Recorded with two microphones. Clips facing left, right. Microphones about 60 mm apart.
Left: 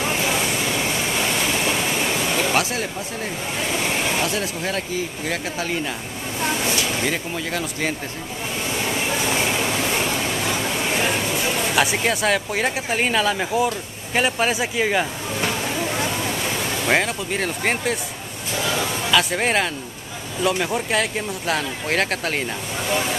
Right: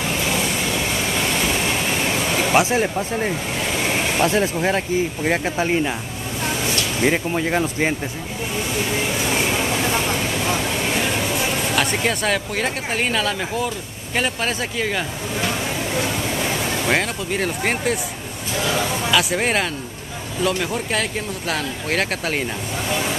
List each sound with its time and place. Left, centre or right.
2.5 s speech: right
7.1 s speech: right
11.7 s speech: centre
16.8 s speech: centre